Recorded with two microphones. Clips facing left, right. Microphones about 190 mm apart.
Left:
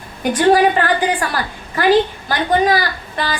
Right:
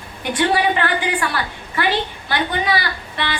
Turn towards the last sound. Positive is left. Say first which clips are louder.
# left 3 dB
turn(degrees=40)  # may be behind; listen again after turning